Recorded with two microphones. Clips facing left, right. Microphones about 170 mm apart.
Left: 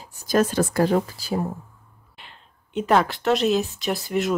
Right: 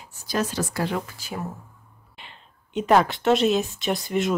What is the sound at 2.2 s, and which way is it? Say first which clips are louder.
Speech: right 1 dB; centre (ahead or behind).